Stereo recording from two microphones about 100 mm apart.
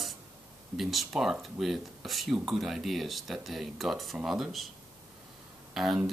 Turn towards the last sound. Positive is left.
turn(degrees=-5)  # may be behind; listen again after turning